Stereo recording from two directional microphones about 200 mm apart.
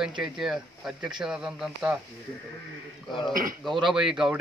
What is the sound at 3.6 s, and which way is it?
Speech, centre (ahead or behind).